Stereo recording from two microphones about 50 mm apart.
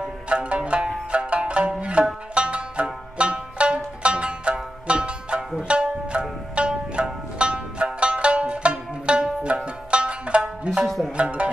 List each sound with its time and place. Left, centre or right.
0.0 s music: right
10.8 s music: centre
11.1 s music: right